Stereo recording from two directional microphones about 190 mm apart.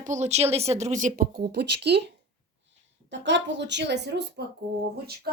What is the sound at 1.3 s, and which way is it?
A woman's voice, 60° right (ahead or behind).